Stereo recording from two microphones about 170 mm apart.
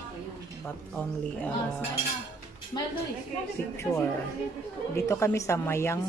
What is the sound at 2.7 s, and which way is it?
Speech, 25° left (ahead or behind).